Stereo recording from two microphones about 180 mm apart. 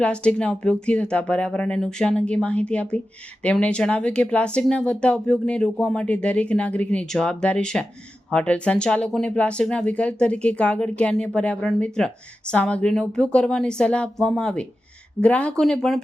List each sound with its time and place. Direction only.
0.0 s speech: 5° left (ahead or behind)